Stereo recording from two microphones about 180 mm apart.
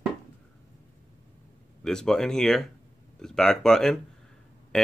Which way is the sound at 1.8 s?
5° left (ahead or behind).